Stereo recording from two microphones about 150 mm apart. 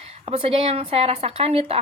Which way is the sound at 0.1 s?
40° right (ahead or behind).